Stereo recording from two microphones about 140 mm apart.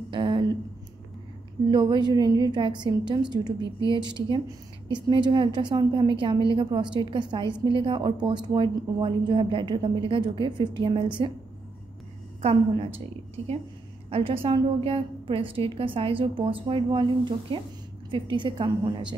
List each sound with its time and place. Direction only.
0.1 s a sound: 35° right (ahead or behind)
1.7 s a woman's voice: 35° right (ahead or behind)
12.4 s a woman's voice: 45° right (ahead or behind)